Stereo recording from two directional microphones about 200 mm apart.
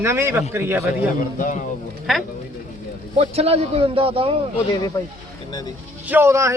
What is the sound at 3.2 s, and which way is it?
A man's voice, 30° right (ahead or behind).